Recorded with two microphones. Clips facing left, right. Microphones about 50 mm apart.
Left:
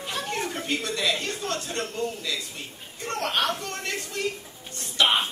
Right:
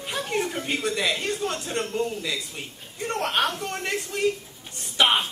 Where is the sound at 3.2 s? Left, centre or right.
Centre.